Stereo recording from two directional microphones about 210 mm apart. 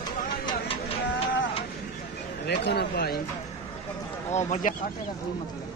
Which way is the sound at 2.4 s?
55° left (ahead or behind).